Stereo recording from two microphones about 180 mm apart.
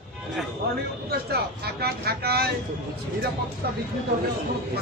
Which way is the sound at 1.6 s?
60° right (ahead or behind).